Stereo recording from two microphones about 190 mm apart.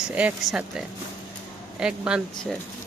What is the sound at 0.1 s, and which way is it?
Speech, 5° right (ahead or behind).